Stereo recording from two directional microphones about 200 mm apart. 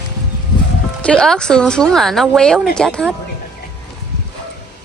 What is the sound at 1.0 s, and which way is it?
Speech, 5° left (ahead or behind).